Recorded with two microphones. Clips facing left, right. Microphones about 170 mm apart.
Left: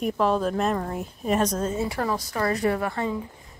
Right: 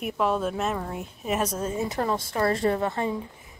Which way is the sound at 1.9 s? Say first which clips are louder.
Even; 25° right (ahead or behind).